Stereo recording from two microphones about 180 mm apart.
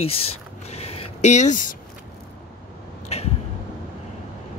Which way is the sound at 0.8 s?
35° left (ahead or behind).